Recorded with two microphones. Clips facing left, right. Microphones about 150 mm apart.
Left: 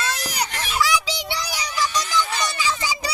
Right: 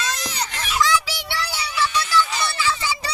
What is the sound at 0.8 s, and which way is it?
Child singing, 15° left (ahead or behind).